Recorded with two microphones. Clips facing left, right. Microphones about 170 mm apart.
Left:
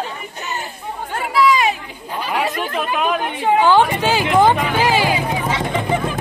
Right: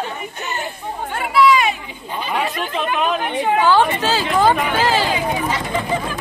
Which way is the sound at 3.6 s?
15° left (ahead or behind).